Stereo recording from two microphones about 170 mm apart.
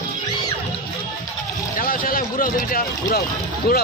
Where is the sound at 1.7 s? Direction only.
55° left (ahead or behind).